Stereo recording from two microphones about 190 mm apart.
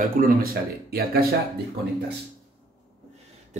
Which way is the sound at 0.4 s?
50° right (ahead or behind).